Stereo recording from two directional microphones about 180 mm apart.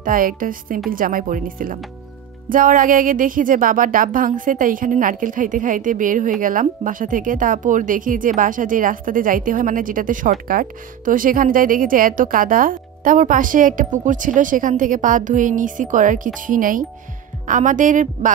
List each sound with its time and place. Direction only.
0.0 s speech: 50° right (ahead or behind)